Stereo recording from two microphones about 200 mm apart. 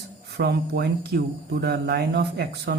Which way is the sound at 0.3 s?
55° right (ahead or behind).